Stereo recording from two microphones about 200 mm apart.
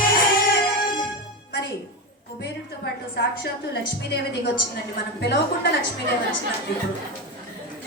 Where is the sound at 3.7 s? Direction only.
55° left (ahead or behind).